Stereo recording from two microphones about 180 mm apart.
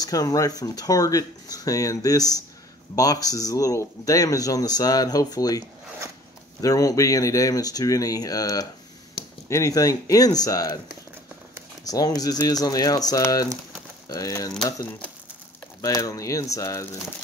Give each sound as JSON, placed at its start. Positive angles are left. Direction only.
{"t": 0.0, "sound": "speech", "side_deg": 20}
{"t": 6.6, "sound": "speech", "side_deg": 20}
{"t": 11.8, "sound": "speech", "side_deg": 20}